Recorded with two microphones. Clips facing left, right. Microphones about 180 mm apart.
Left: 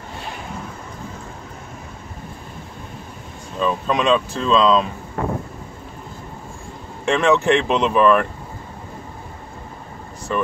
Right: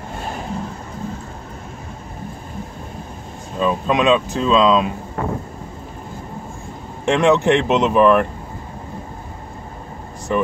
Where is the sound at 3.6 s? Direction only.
5° right (ahead or behind).